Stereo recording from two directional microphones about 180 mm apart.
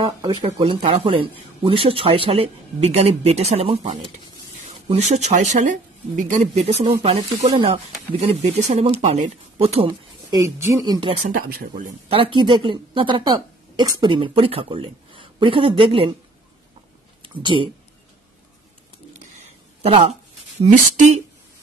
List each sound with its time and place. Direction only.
0.0 s speech: 25° right (ahead or behind)
11.2 s speech: 55° right (ahead or behind)
12.1 s speech: 30° right (ahead or behind)
17.2 s speech: 25° right (ahead or behind)
19.1 s a sound: 35° right (ahead or behind)
20.6 s speech: 40° right (ahead or behind)